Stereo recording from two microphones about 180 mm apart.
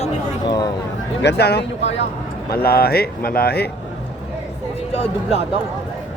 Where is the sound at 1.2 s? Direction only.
70° left (ahead or behind).